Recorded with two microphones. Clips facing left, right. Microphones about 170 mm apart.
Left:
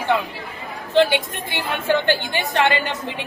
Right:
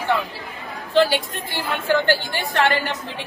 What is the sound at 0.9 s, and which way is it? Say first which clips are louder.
A woman's voice: left 1 dB; 20° left (ahead or behind).